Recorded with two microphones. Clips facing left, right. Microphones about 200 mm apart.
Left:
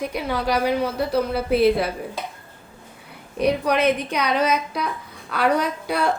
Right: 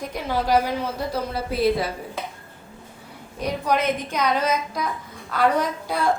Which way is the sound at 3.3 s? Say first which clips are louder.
Left 4 dB; 70° left (ahead or behind).